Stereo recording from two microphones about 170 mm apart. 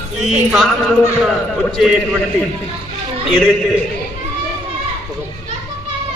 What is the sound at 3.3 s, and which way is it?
Speech, 5° left (ahead or behind).